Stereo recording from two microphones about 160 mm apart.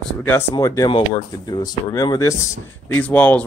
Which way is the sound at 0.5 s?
20° left (ahead or behind).